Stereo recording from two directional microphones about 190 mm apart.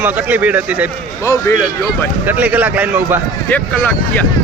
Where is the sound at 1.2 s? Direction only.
15° left (ahead or behind).